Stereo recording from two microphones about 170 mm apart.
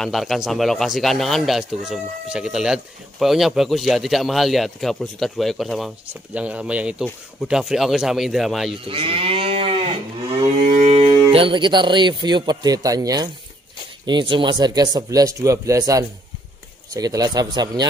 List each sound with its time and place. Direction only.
0.0 s speech: centre (ahead or behind)
8.8 s livestock: 30° right (ahead or behind)
11.3 s speech: 30° right (ahead or behind)